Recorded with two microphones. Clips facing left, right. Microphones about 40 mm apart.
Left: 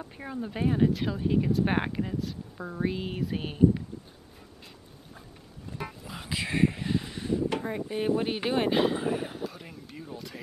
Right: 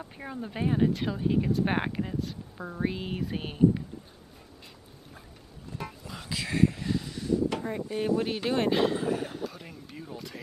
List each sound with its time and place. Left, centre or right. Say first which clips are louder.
0.0 s speech: left 2 dB; centre
5.8 s music: left 1 dB; centre
7.5 s speech: left 1 dB; centre